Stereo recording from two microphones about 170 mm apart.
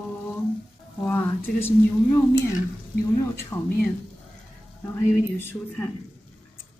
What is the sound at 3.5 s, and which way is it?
Speech, 15° left (ahead or behind).